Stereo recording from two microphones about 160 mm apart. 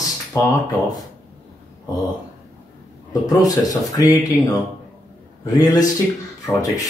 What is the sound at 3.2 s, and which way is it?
Speech, 25° left (ahead or behind).